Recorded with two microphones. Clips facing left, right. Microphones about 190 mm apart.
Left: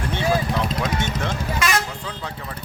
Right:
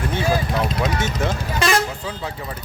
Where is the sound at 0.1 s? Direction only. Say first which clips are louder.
Left 1 dB; 5° right (ahead or behind).